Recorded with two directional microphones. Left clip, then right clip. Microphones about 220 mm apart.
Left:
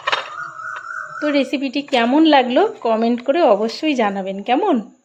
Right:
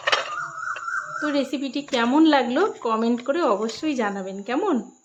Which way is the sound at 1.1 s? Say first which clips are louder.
Left 9 dB; 10° left (ahead or behind).